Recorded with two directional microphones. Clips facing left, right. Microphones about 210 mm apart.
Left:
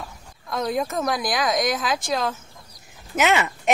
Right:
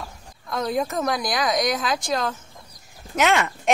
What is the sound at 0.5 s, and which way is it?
Speech, centre (ahead or behind).